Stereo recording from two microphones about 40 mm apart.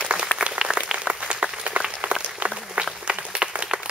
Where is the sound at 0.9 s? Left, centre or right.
Right.